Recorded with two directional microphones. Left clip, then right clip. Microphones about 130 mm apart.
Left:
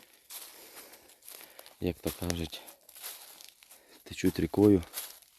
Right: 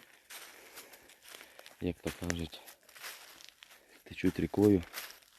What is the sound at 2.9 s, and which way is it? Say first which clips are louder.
Crumpling: right 1 dB; 5° left (ahead or behind).